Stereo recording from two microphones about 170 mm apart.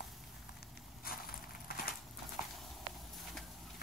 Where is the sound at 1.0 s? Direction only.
60° left (ahead or behind).